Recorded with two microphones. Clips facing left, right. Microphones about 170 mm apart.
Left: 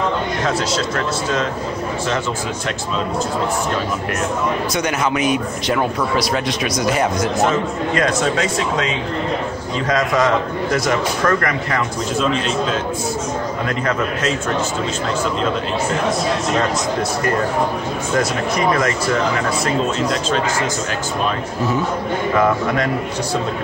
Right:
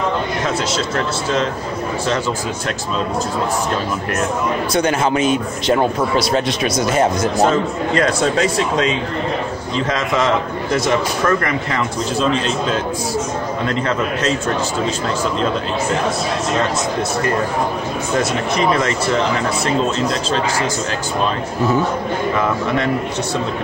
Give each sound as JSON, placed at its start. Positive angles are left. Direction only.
{"t": 4.7, "sound": "a man's voice", "side_deg": -30}
{"t": 18.6, "sound": "a man's voice", "side_deg": -25}